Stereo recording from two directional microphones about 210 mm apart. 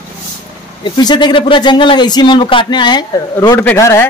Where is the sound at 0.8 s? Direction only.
20° left (ahead or behind).